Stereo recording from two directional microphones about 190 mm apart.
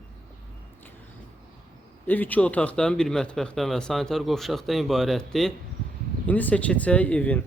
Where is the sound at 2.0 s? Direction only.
10° left (ahead or behind).